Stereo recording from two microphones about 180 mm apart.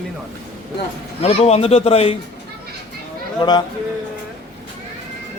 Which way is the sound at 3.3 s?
25° left (ahead or behind).